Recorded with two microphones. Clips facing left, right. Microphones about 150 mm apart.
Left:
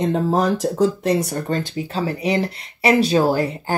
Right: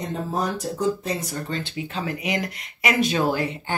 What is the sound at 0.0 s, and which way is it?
Speech, 80° left.